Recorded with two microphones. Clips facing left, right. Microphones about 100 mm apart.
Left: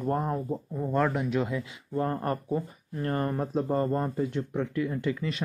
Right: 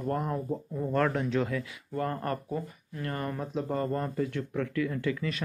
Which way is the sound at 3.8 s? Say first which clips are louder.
Left 3 dB; 25° left (ahead or behind).